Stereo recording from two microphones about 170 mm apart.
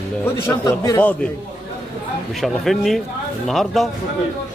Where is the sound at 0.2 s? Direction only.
15° left (ahead or behind).